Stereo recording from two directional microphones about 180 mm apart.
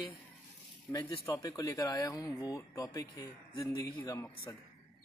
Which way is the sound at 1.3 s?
15° left (ahead or behind).